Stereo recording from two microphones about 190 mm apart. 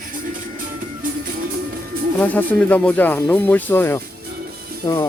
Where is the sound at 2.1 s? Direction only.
10° left (ahead or behind).